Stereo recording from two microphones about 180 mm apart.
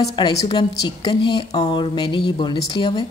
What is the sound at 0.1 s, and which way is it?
Speech, 25° left (ahead or behind).